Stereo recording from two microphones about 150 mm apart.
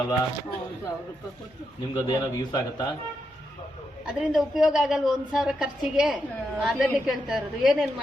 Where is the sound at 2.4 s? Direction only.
25° left (ahead or behind).